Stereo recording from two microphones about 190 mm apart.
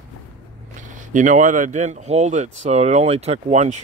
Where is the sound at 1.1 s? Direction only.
40° right (ahead or behind).